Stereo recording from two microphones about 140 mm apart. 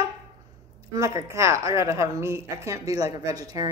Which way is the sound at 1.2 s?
20° right (ahead or behind).